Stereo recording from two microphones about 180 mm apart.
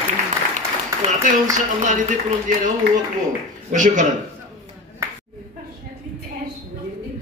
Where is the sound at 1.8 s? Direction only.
45° right (ahead or behind).